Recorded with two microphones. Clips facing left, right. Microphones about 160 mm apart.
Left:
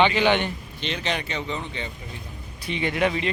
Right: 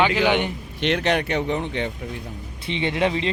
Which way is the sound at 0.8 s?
65° right (ahead or behind).